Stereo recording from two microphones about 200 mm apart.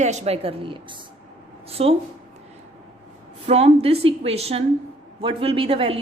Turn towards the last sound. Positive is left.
turn(degrees=-30)  # may be behind; listen again after turning